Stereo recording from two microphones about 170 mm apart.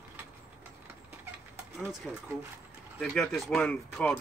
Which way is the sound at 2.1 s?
5° right (ahead or behind).